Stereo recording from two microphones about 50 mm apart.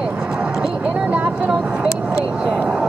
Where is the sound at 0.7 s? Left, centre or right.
Right.